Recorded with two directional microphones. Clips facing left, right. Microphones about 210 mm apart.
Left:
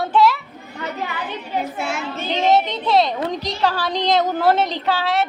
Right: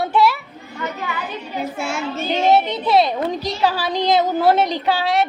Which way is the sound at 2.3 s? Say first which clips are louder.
Right 1 dB; 10° right (ahead or behind).